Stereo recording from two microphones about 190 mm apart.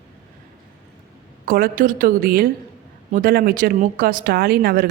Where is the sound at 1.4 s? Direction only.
50° right (ahead or behind).